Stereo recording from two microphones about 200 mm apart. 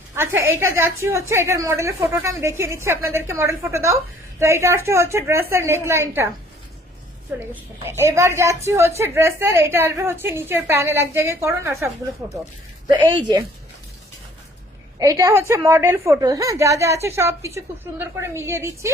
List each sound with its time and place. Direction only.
0.2 s a woman's voice: 10° right (ahead or behind)
7.3 s a woman's voice: 10° right (ahead or behind)
13.1 s a woman's voice: 20° right (ahead or behind)
14.9 s a woman's voice: 15° right (ahead or behind)